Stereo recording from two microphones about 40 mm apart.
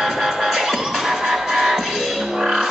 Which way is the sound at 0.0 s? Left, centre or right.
Centre.